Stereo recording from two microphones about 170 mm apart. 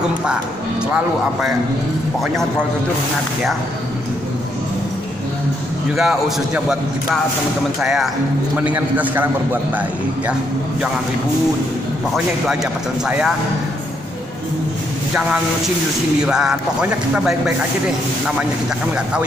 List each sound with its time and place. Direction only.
5.9 s a man's voice: centre (ahead or behind)
16.2 s a man's voice: 5° right (ahead or behind)